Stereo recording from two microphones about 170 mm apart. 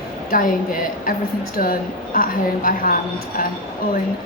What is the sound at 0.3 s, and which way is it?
A woman's voice, 55° left (ahead or behind).